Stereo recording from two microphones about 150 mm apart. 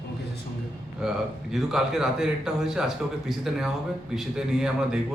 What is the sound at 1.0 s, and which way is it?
Speech, 5° right (ahead or behind).